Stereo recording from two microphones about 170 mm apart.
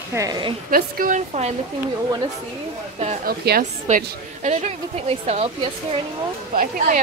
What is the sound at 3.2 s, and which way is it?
Speech, 60° right (ahead or behind).